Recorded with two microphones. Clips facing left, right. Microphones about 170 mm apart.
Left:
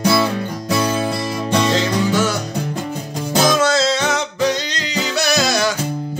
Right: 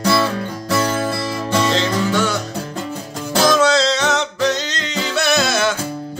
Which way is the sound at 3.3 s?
15° left (ahead or behind).